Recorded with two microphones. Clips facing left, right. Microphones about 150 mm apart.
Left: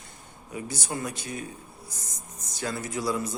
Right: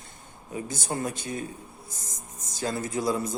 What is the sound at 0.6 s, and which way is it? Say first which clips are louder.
Speech: even; 45° right (ahead or behind).